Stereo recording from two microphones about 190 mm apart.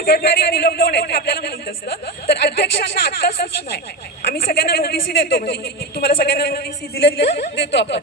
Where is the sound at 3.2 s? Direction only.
60° left (ahead or behind).